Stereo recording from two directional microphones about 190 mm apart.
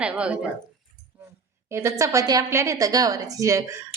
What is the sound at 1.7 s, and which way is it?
A woman's voice, 15° right (ahead or behind).